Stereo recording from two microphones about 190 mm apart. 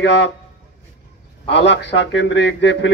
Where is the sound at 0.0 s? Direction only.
65° left (ahead or behind).